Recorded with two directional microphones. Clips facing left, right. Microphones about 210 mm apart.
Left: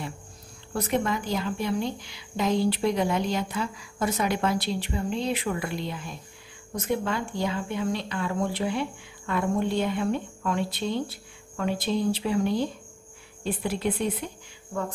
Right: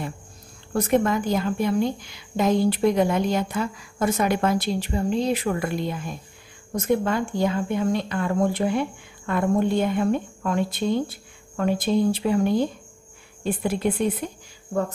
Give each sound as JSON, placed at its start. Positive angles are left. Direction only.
{"t": 0.7, "sound": "speech", "side_deg": -50}